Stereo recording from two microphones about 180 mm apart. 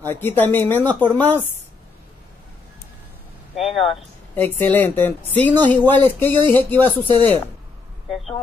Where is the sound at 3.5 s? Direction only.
Centre (ahead or behind).